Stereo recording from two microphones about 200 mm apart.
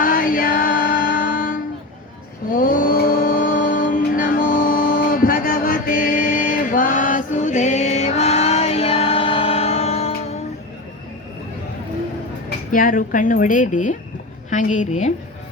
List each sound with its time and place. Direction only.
0.0 s music: 45° left (ahead or behind)
2.5 s mantra: 45° left (ahead or behind)
12.7 s a woman's voice: 45° left (ahead or behind)